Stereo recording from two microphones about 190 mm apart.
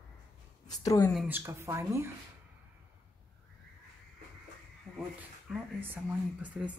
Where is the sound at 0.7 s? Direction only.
20° left (ahead or behind).